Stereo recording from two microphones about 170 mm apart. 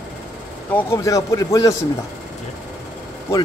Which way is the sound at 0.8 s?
20° left (ahead or behind).